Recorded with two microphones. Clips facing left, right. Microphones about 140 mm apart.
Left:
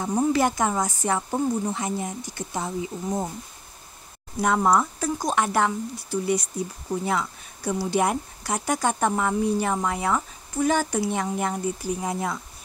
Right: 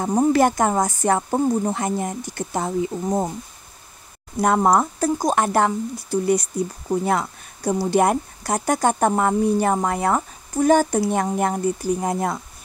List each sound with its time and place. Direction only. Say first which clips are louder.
0.0 s speech: right 5 dB; 45° right (ahead or behind)
4.4 s speech: right 3 dB; 40° right (ahead or behind)